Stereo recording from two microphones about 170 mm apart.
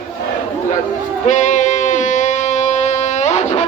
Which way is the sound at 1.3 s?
45° left (ahead or behind).